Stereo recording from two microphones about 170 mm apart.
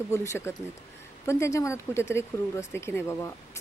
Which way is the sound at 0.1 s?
15° left (ahead or behind).